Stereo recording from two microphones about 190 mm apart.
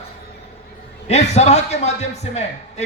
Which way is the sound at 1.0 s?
35° left (ahead or behind).